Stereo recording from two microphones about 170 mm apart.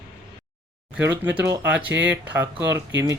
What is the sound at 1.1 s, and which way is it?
Speech, 10° right (ahead or behind).